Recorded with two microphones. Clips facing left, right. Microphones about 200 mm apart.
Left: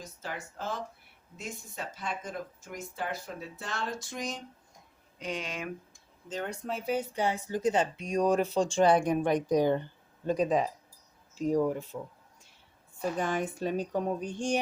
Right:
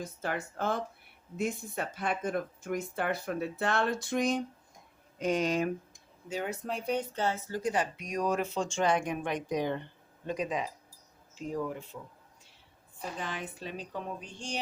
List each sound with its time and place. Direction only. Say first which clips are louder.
0.0 s speech: right 5 dB; 55° right (ahead or behind)
5.2 s speech: right 8 dB; 40° right (ahead or behind)
5.9 s speech: right 1 dB; 10° right (ahead or behind); by 11.9 s 45° left (ahead or behind)
13.1 s speech: left 7 dB; 45° left (ahead or behind)